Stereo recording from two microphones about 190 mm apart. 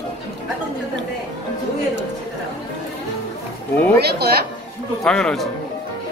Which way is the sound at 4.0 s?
55° right (ahead or behind).